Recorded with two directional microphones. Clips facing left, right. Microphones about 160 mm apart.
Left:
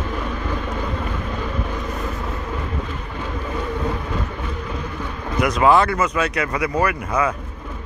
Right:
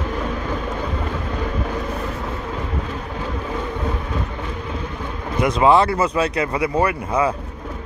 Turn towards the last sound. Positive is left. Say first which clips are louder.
# right 1 dB
turn(degrees=-30)  # may be behind; listen again after turning